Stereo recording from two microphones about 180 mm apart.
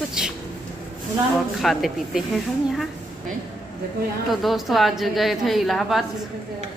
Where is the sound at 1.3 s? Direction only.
Centre (ahead or behind).